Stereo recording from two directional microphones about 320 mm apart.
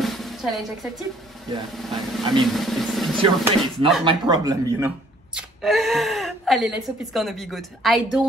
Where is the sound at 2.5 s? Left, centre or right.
Centre.